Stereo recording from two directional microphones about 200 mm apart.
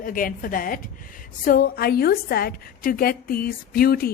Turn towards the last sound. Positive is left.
turn(degrees=50)  # may be behind; listen again after turning